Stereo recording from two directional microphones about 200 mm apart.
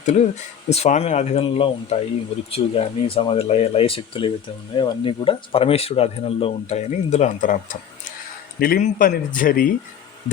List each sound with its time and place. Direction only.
0.7 s speech: 30° left (ahead or behind)